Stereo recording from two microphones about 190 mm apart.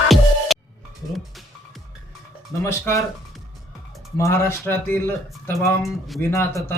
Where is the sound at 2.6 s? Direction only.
15° left (ahead or behind).